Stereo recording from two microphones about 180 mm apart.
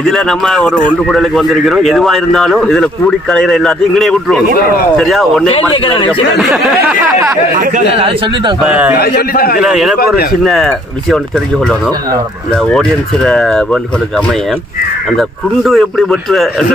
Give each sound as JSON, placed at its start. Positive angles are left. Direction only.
{"t": 0.0, "sound": "a man's voice", "side_deg": 5}
{"t": 5.5, "sound": "speech", "side_deg": 30}
{"t": 7.5, "sound": "a man's voice", "side_deg": -45}
{"t": 7.9, "sound": "a man's voice", "side_deg": -30}
{"t": 8.6, "sound": "a man's voice", "side_deg": -5}
{"t": 8.9, "sound": "a man's voice", "side_deg": 60}
{"t": 9.6, "sound": "a man's voice", "side_deg": 0}